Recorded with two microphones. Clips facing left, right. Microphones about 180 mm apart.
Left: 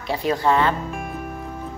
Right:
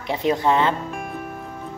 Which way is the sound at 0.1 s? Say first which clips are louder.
Even; 20° right (ahead or behind).